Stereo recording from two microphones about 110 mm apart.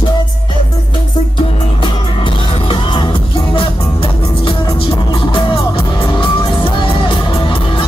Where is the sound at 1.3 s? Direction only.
50° left (ahead or behind).